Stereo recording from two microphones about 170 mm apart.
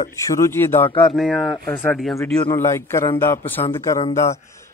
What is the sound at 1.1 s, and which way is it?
Speech, centre (ahead or behind).